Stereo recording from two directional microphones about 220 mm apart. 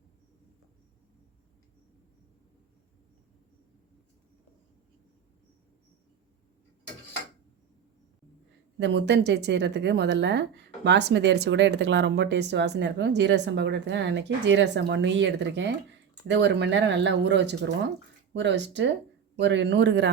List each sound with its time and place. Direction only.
8.8 s speech: 50° right (ahead or behind)